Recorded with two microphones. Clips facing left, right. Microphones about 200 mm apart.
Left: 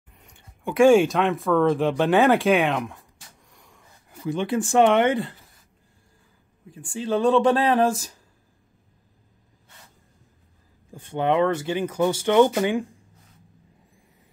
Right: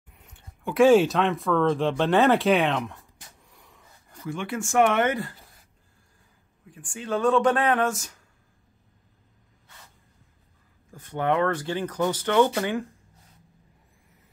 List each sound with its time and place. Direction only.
0.2 s speech: centre (ahead or behind)
3.5 s a sound: 5° right (ahead or behind)
4.1 s speech: 15° left (ahead or behind)
4.6 s speech: 30° left (ahead or behind)
6.9 s speech: 30° left (ahead or behind)
11.0 s speech: 25° left (ahead or behind)